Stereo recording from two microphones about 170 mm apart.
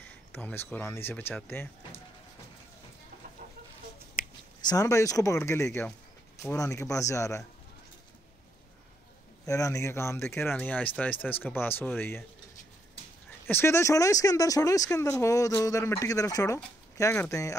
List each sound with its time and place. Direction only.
0.0 s speech: 10° left (ahead or behind)
4.2 s a sound: 55° left (ahead or behind)
4.6 s speech: 20° left (ahead or behind)
9.5 s speech: 20° left (ahead or behind)
13.5 s speech: 15° left (ahead or behind)